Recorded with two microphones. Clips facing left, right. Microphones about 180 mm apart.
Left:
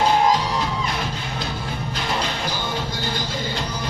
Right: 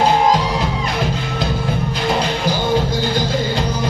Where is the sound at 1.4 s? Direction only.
90° right.